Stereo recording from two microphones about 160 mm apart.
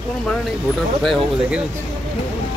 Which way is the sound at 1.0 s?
Centre (ahead or behind).